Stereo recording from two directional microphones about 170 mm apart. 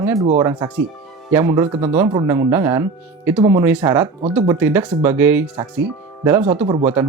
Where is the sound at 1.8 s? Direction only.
10° right (ahead or behind).